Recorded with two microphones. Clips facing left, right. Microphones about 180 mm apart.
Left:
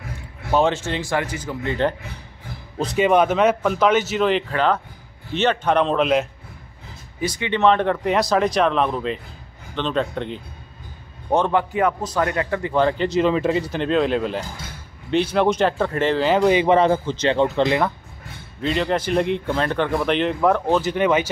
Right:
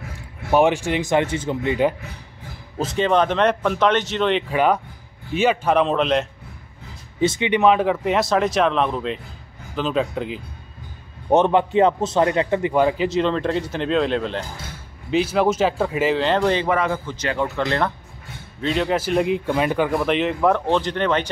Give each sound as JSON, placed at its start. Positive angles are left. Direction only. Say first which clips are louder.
{"t": 0.5, "sound": "a man's voice", "louder": "right 2 dB", "side_deg": -15}
{"t": 3.0, "sound": "a man's voice", "louder": "left 2 dB", "side_deg": 10}
{"t": 4.5, "sound": "a man's voice", "louder": "right 2 dB", "side_deg": -10}
{"t": 7.2, "sound": "a man's voice", "louder": "right 3 dB", "side_deg": -25}
{"t": 11.2, "sound": "a man's voice", "louder": "right 3 dB", "side_deg": -20}
{"t": 16.6, "sound": "a man's voice", "louder": "left 5 dB", "side_deg": 30}
{"t": 18.6, "sound": "a man's voice", "louder": "even", "side_deg": 0}